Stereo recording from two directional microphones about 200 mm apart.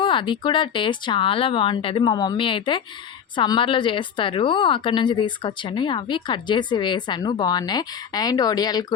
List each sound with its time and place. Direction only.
0.0 s a woman's voice: 25° left (ahead or behind)